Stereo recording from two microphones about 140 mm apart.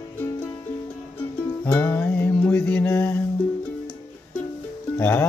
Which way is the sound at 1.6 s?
15° left (ahead or behind).